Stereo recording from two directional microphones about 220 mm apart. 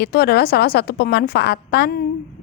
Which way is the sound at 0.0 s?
45° left (ahead or behind).